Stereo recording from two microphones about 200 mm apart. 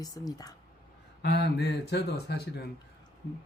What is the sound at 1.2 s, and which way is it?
Speech, 60° left (ahead or behind).